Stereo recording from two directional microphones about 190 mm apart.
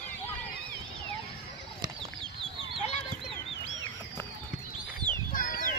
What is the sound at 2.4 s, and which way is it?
Chicken, 30° right (ahead or behind).